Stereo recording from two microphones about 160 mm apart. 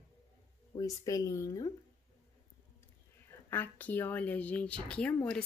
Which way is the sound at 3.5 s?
10° left (ahead or behind).